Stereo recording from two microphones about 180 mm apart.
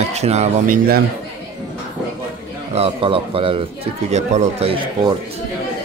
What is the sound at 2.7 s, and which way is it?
Speech, 30° right (ahead or behind).